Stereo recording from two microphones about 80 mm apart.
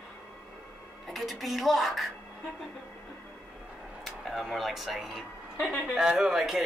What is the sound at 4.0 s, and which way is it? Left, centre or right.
Speech, centre.